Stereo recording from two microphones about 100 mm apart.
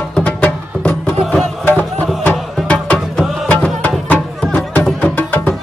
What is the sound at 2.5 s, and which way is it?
Music, 5° left (ahead or behind).